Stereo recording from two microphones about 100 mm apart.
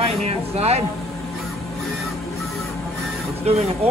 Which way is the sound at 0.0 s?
90° right.